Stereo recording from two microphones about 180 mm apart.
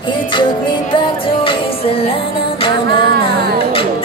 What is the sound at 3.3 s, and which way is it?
Music, 60° right (ahead or behind).